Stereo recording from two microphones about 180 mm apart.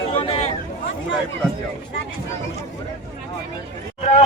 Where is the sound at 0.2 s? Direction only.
30° left (ahead or behind).